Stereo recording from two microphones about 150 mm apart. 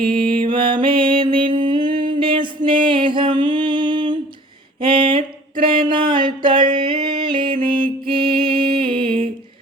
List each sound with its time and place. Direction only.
0.1 s mantra: 35° right (ahead or behind)
5.9 s music: 35° right (ahead or behind)